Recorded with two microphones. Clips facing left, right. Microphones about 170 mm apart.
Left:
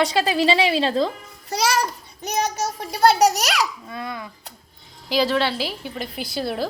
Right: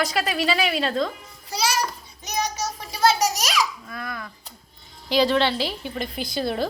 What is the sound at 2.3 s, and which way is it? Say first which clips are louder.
A child's voice: left 4 dB; 50° left (ahead or behind).